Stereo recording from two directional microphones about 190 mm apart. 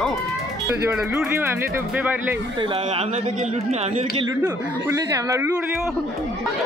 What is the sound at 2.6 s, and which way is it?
Speech, 30° right (ahead or behind).